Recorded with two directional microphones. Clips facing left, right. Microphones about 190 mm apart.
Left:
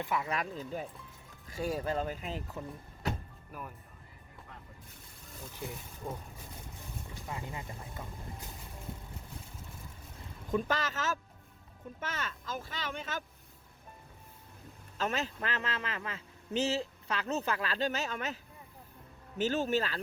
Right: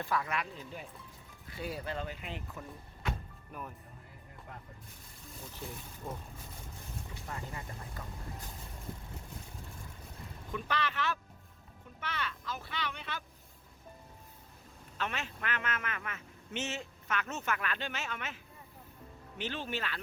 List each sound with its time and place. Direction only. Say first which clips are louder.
0.0 s speech: even; 20° left (ahead or behind)
0.3 s a man's voice: left 3 dB; 40° left (ahead or behind)
3.5 s speech: even; 5° left (ahead or behind)
7.3 s speech: left 2 dB; 15° left (ahead or behind)
10.5 s a man's voice: left 4 dB; 40° left (ahead or behind)
14.9 s a man's voice: left 5 dB; 40° left (ahead or behind)
19.4 s a man's voice: left 8 dB; 40° left (ahead or behind)